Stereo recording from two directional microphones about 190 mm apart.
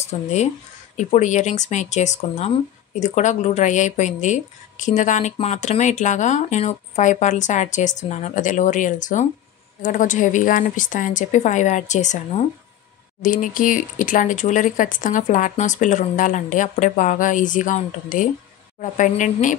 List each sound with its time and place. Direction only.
0.0 s speech: 35° left (ahead or behind)